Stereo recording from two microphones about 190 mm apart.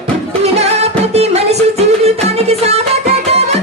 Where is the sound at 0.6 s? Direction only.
35° right (ahead or behind).